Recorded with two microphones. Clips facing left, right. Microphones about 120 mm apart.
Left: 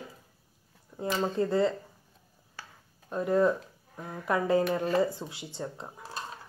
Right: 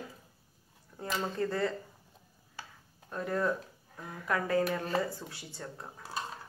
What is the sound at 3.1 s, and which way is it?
Speech, 20° left (ahead or behind).